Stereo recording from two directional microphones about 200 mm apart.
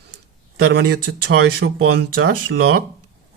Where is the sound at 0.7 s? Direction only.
60° right (ahead or behind); by 2.0 s 90° right.